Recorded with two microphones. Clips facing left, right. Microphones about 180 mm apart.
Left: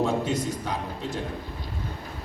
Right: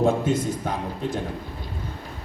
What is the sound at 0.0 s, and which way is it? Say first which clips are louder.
Speech: right 4 dB; 50° right (ahead or behind).